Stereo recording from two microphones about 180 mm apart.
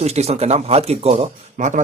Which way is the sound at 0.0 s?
35° right (ahead or behind).